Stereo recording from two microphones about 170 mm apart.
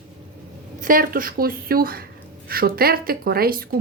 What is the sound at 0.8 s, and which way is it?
A woman's voice, 55° right (ahead or behind).